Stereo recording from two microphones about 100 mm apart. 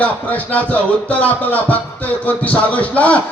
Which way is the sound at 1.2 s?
15° left (ahead or behind).